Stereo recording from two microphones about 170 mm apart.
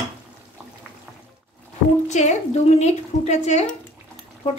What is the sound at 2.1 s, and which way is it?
A woman's voice, 40° left (ahead or behind).